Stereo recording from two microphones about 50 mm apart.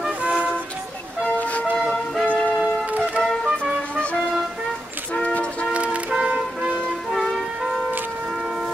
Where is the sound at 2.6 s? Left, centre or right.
Right.